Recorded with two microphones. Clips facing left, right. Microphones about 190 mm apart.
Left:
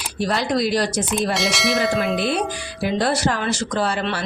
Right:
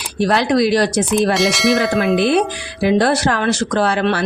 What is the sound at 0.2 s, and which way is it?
Speech, 70° right (ahead or behind).